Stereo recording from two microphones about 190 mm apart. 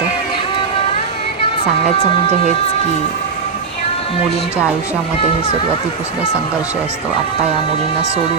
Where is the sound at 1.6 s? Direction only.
30° left (ahead or behind).